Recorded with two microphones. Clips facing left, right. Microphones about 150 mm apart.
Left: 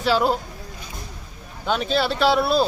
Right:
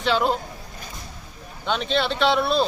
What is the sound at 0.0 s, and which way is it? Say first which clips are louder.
Speech: left 2 dB; 5° left (ahead or behind).